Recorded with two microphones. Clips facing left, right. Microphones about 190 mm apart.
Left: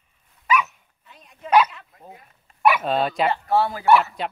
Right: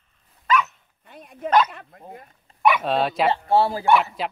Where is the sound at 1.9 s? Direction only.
50° right (ahead or behind).